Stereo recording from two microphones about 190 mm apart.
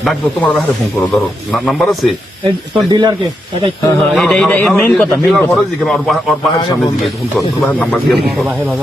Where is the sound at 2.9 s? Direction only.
20° right (ahead or behind).